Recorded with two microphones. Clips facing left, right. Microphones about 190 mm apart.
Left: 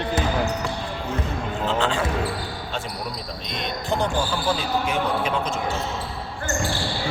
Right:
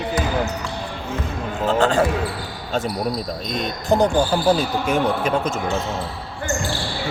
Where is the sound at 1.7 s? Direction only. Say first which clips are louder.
Right 6 dB; 45° right (ahead or behind).